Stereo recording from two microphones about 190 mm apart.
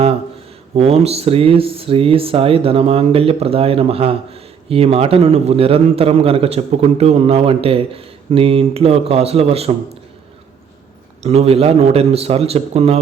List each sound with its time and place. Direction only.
0.7 s speech: 30° right (ahead or behind)
11.2 s speech: 35° right (ahead or behind)